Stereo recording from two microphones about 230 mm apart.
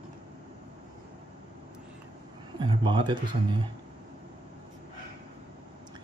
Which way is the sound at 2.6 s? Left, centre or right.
Right.